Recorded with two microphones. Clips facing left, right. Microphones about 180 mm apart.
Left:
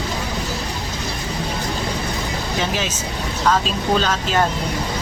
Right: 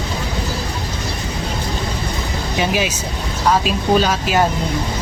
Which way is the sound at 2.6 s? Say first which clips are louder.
Right 7 dB; 10° right (ahead or behind).